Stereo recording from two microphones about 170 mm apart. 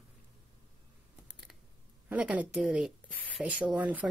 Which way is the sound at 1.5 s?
5° right (ahead or behind).